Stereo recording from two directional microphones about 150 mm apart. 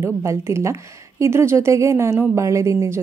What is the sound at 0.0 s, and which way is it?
A woman's voice, 20° right (ahead or behind).